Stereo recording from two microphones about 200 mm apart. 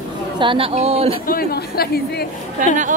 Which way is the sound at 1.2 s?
45° left (ahead or behind).